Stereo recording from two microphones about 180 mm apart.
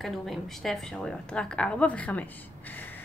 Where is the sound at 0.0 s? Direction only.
Centre (ahead or behind).